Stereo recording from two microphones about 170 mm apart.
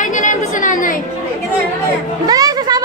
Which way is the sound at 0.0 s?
45° left (ahead or behind).